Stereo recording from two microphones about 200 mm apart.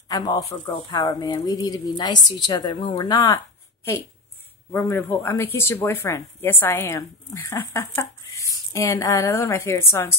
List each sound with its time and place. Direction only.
0.1 s speech: 20° left (ahead or behind)
4.7 s speech: 10° left (ahead or behind)